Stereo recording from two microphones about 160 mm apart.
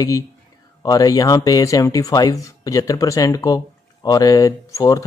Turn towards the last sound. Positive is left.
turn(degrees=20)  # may be behind; listen again after turning